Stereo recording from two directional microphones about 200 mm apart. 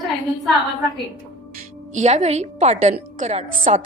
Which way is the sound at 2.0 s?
35° right (ahead or behind).